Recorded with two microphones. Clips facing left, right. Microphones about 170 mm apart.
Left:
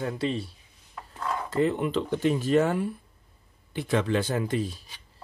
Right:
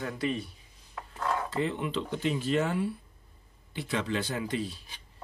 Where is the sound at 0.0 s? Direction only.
30° left (ahead or behind).